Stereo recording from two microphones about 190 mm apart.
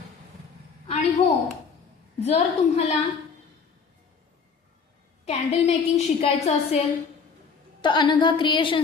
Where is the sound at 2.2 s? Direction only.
30° left (ahead or behind).